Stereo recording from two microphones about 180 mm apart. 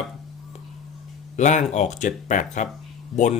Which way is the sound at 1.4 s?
40° left (ahead or behind).